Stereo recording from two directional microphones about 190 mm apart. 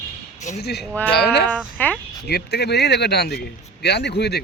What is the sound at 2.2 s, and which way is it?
Speech, 60° left (ahead or behind).